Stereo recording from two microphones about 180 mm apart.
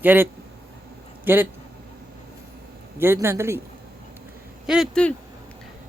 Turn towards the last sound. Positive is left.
turn(degrees=0)  # may be behind; listen again after turning